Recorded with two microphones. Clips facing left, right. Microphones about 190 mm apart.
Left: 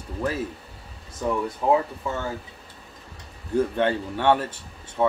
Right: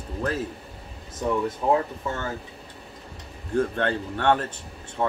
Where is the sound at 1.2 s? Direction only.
20° right (ahead or behind).